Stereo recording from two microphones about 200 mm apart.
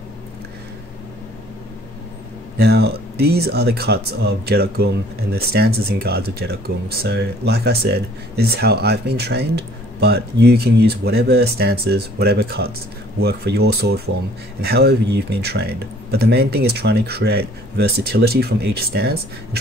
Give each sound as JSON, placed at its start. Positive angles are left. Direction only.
{"t": 2.6, "sound": "speech", "side_deg": -55}